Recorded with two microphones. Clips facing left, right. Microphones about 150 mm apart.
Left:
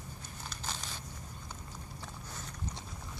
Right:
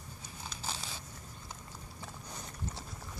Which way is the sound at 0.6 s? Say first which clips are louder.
Right 1 dB; 10° right (ahead or behind).